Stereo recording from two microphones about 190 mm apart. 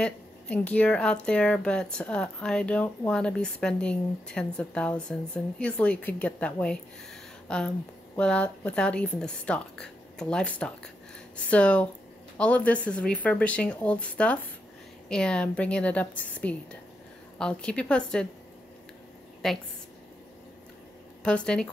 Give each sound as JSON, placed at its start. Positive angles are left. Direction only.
{"t": 0.0, "sound": "speech", "side_deg": 5}
{"t": 19.4, "sound": "speech", "side_deg": 0}
{"t": 21.2, "sound": "speech", "side_deg": 5}